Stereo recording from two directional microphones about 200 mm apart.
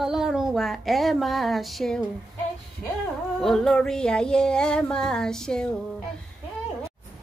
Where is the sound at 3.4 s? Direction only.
Centre (ahead or behind).